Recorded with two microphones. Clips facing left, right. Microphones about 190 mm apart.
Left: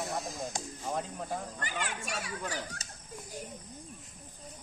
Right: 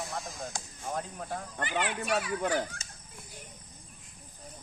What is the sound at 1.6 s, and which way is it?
Speech, 45° left (ahead or behind).